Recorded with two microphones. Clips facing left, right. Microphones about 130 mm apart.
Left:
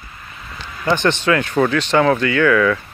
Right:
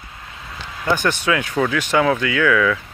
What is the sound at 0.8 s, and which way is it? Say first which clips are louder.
Speech: left 3 dB; 5° right (ahead or behind).